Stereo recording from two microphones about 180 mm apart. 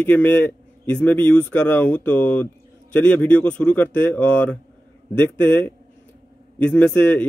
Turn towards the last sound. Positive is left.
turn(degrees=10)  # may be behind; listen again after turning